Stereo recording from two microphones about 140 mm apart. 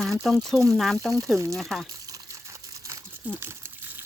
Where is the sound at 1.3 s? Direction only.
20° right (ahead or behind).